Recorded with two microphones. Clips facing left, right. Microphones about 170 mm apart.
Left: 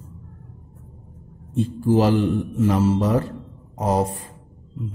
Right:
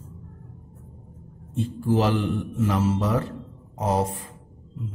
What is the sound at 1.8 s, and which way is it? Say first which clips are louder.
Speech: left 4 dB; 35° left (ahead or behind).